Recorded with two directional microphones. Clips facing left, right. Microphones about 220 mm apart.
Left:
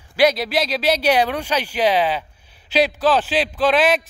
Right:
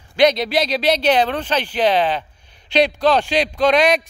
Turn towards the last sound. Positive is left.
turn(degrees=5)  # may be behind; listen again after turning